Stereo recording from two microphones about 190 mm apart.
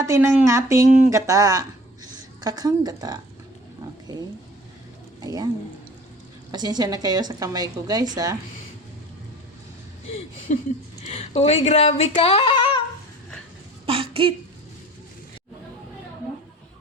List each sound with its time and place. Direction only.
0.0 s a woman's voice: 15° right (ahead or behind)
5.2 s speech: 20° right (ahead or behind)
6.5 s a woman's voice: 20° right (ahead or behind)
10.5 s speech: 40° left (ahead or behind)
13.8 s a woman's voice: 30° right (ahead or behind)